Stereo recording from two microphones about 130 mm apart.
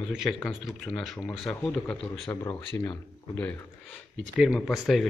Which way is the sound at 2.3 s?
25° left (ahead or behind).